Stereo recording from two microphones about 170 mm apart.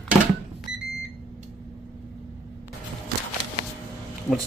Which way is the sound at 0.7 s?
90° right.